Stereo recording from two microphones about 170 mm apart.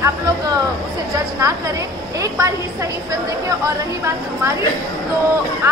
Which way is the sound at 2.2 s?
20° right (ahead or behind).